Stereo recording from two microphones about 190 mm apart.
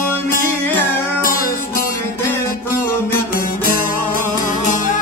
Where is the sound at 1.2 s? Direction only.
50° left (ahead or behind).